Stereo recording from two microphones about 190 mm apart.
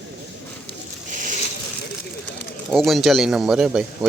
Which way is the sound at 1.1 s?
45° right (ahead or behind).